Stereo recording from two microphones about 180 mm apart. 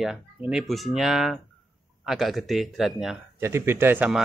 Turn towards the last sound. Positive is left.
turn(degrees=-10)  # may be behind; listen again after turning